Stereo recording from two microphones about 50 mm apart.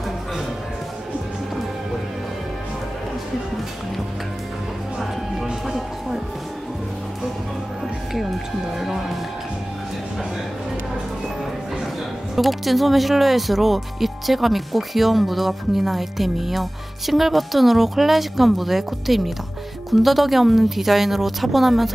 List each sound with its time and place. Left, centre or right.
5.4 s music: centre
8.7 s speech: centre
12.4 s speech: centre